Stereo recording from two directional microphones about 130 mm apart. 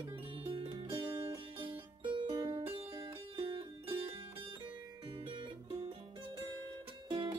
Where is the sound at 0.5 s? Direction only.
40° right (ahead or behind).